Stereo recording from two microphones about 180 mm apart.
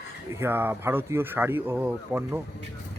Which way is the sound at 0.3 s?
10° right (ahead or behind).